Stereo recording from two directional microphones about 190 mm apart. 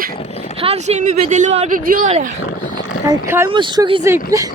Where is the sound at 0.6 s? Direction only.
35° right (ahead or behind).